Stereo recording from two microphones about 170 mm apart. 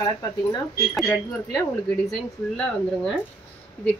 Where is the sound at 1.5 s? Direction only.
20° left (ahead or behind).